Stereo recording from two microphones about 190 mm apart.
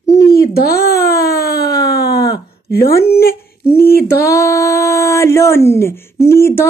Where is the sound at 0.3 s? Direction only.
55° left (ahead or behind).